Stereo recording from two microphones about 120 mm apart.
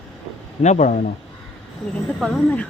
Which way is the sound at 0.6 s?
85° left.